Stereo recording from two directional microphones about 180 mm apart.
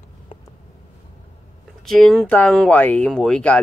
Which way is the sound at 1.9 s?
Centre (ahead or behind).